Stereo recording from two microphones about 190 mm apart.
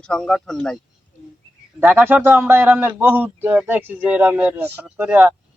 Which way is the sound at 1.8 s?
10° right (ahead or behind).